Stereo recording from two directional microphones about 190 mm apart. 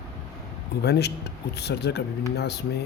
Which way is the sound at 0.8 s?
60° left (ahead or behind).